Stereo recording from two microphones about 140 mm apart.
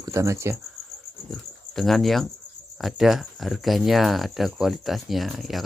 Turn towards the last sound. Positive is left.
turn(degrees=0)  # may be behind; listen again after turning